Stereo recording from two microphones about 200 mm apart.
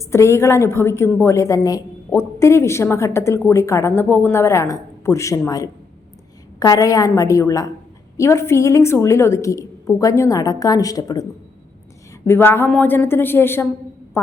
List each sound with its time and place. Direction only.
0.0 s a woman's voice: 15° left (ahead or behind)